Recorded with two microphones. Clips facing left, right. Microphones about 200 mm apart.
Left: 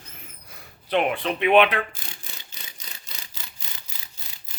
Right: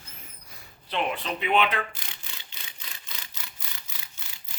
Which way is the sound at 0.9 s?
60° left (ahead or behind).